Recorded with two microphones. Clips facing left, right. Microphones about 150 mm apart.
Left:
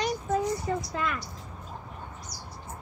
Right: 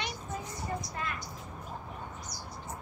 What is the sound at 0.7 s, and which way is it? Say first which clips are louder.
Speech: left 7 dB; 90° left.